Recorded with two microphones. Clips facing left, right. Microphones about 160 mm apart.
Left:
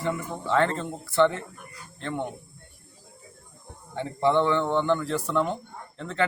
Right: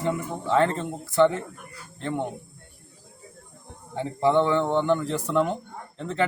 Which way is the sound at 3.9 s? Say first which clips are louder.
Right 1 dB; 15° right (ahead or behind).